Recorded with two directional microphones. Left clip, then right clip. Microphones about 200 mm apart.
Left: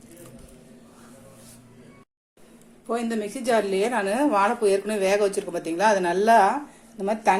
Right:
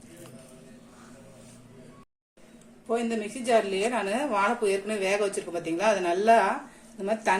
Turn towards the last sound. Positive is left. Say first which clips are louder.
# left 4 dB
turn(degrees=25)  # may be behind; listen again after turning